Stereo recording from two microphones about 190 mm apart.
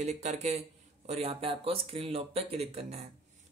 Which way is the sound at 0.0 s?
35° right (ahead or behind).